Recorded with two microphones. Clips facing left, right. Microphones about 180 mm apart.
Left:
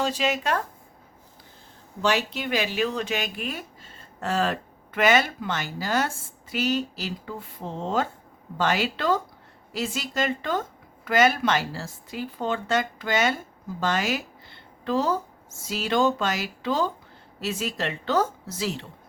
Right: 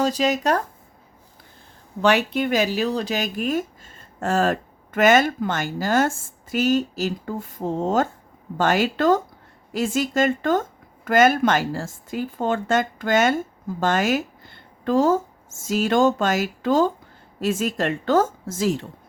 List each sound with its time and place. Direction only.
0.0 s speech: 40° right (ahead or behind)
2.0 s speech: 60° right (ahead or behind)